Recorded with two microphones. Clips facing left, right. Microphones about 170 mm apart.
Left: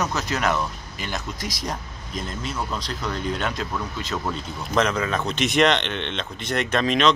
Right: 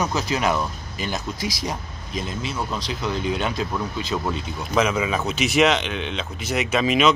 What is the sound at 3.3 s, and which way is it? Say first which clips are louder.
Speech: right 1 dB; 10° right (ahead or behind).